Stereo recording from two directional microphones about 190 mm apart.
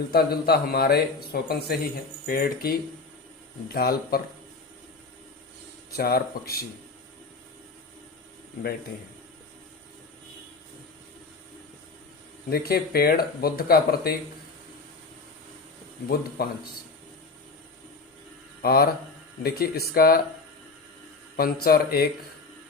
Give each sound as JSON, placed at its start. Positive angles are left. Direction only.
{"t": 0.1, "sound": "speech", "side_deg": 55}
{"t": 6.0, "sound": "speech", "side_deg": 55}
{"t": 12.5, "sound": "speech", "side_deg": 55}
{"t": 18.6, "sound": "speech", "side_deg": 50}
{"t": 21.3, "sound": "speech", "side_deg": 50}